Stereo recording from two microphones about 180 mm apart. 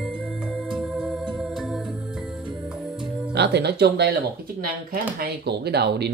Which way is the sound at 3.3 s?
70° right (ahead or behind).